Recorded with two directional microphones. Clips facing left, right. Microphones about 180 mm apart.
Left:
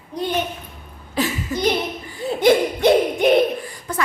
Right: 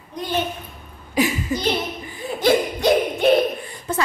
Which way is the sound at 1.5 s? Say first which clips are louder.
Left 1 dB; 15° right (ahead or behind).